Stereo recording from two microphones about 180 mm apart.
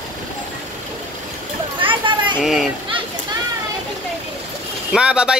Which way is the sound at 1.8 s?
30° right (ahead or behind).